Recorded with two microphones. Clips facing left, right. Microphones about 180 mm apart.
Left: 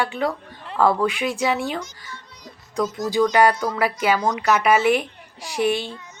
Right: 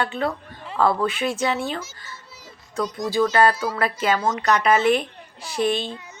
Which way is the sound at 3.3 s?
15° left (ahead or behind).